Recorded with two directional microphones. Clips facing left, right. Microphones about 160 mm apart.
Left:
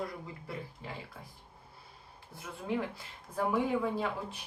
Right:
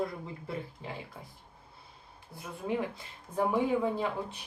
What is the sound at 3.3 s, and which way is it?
Speech, 20° right (ahead or behind).